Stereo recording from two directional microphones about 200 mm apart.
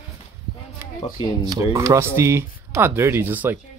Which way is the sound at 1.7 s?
15° right (ahead or behind).